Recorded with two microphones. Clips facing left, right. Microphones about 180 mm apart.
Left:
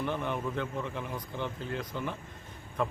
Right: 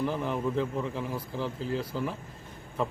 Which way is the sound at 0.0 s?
Centre (ahead or behind).